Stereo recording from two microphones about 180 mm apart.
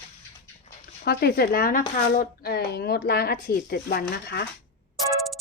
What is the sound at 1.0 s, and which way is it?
Speech, 60° left (ahead or behind).